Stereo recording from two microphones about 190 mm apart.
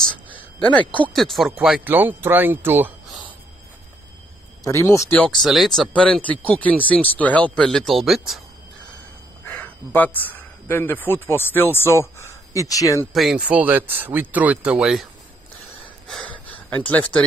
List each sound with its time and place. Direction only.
0.0 s a sound: 5° left (ahead or behind)
0.7 s speech: 25° right (ahead or behind)
1.1 s speech: centre (ahead or behind)
4.6 s speech: 15° left (ahead or behind)
5.2 s speech: centre (ahead or behind)
9.5 s speech: 10° left (ahead or behind)
13.1 s speech: centre (ahead or behind)
16.1 s gasp: 5° left (ahead or behind)